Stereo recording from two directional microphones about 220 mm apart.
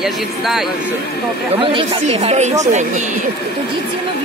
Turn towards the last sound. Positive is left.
turn(degrees=-30)  # may be behind; listen again after turning